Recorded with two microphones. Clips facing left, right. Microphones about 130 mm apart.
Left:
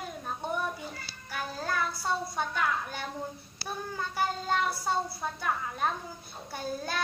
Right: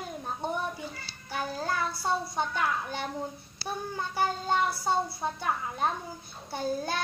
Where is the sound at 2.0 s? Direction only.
25° right (ahead or behind).